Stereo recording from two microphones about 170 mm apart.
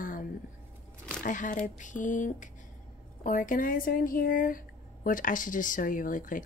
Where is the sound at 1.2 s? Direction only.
50° left (ahead or behind).